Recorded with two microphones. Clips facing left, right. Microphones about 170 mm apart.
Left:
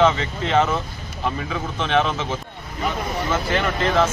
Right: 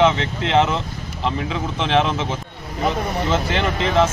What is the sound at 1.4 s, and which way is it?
Speech, 20° right (ahead or behind).